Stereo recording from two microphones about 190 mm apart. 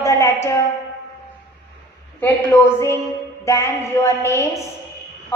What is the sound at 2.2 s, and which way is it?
Speech, 15° left (ahead or behind).